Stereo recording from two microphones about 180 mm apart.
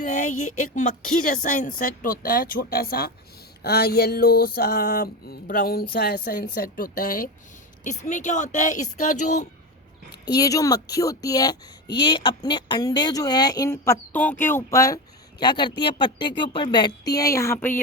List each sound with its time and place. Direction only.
0.8 s speech: 45° left (ahead or behind)
3.6 s a sound: 65° left (ahead or behind)
7.9 s speech: 40° left (ahead or behind)
10.3 s speech: 20° left (ahead or behind)